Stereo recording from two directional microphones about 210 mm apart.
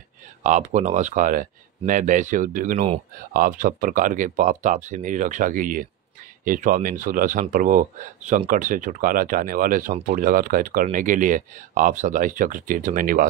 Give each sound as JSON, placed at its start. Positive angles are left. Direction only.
{"t": 0.4, "sound": "speech", "side_deg": -35}